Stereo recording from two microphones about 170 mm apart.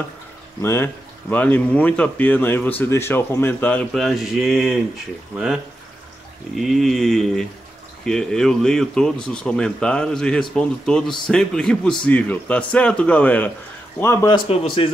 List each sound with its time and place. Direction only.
0.6 s a man's voice: 15° left (ahead or behind); by 4.7 s centre (ahead or behind)
6.5 s a man's voice: centre (ahead or behind)
14.3 s a man's voice: 35° left (ahead or behind)